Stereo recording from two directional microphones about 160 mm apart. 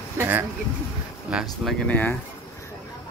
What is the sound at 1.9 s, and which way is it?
Speech, 10° left (ahead or behind).